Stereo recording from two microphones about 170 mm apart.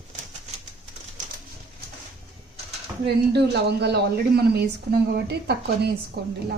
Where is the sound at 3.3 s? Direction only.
75° right (ahead or behind).